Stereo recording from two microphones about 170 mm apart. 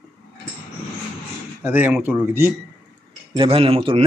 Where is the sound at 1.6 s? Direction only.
10° right (ahead or behind).